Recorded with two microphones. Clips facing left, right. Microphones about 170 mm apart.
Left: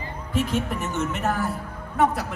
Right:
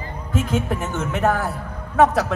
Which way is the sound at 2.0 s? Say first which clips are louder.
Right 6 dB; 85° right.